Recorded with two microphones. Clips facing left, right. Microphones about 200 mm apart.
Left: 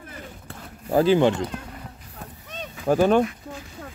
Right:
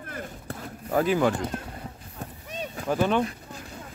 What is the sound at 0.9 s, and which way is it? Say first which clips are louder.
Speech: left 5 dB; 30° left (ahead or behind).